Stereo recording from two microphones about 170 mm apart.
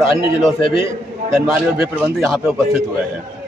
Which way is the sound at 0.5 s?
30° left (ahead or behind).